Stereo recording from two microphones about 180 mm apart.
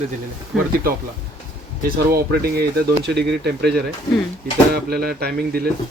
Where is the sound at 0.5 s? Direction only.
Centre (ahead or behind).